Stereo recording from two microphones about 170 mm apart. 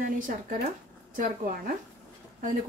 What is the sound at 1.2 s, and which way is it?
Speech, 55° right (ahead or behind).